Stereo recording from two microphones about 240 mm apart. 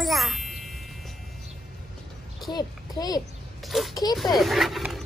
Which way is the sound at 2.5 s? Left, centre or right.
Centre.